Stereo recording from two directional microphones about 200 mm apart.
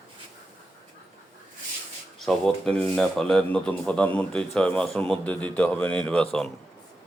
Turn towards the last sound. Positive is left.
turn(degrees=5)  # may be behind; listen again after turning